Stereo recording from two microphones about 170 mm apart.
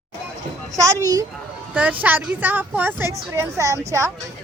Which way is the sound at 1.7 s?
10° right (ahead or behind).